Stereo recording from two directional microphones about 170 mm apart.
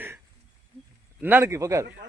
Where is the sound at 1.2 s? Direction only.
15° right (ahead or behind).